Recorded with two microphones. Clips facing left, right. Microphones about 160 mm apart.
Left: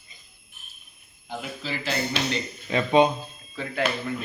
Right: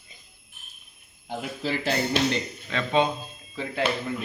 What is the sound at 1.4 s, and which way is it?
Speech, 50° right (ahead or behind).